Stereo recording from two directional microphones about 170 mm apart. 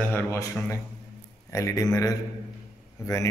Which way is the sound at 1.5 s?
20° left (ahead or behind).